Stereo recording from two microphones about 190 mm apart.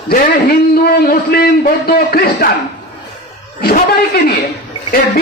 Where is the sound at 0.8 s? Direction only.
55° left (ahead or behind).